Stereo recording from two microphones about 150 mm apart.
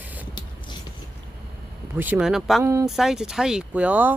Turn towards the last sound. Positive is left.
turn(degrees=-10)  # may be behind; listen again after turning